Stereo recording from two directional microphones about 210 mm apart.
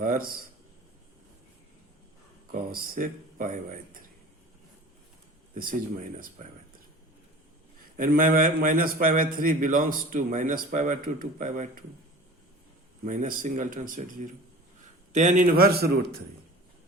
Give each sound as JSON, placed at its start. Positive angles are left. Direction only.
{"t": 0.0, "sound": "a man's voice", "side_deg": -40}
{"t": 2.5, "sound": "a man's voice", "side_deg": -45}
{"t": 5.5, "sound": "a man's voice", "side_deg": -40}
{"t": 7.9, "sound": "a man's voice", "side_deg": -40}
{"t": 13.1, "sound": "a man's voice", "side_deg": -40}